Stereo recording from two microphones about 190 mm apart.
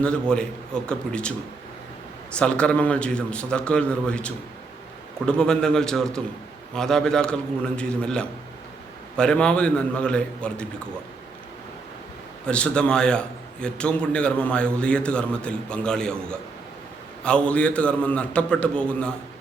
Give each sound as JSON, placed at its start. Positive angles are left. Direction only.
{"t": 0.0, "sound": "a man's voice", "side_deg": 5}
{"t": 2.3, "sound": "a man's voice", "side_deg": 5}
{"t": 12.5, "sound": "a man's voice", "side_deg": 5}